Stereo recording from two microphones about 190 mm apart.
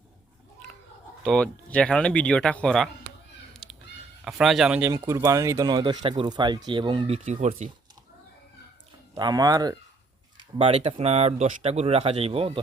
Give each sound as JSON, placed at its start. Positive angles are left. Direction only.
{"t": 1.2, "sound": "speech", "side_deg": 5}
{"t": 3.6, "sound": "cat", "side_deg": 0}
{"t": 4.2, "sound": "speech", "side_deg": -5}
{"t": 7.3, "sound": "speech", "side_deg": -40}
{"t": 9.1, "sound": "speech", "side_deg": -20}
{"t": 10.3, "sound": "speech", "side_deg": -30}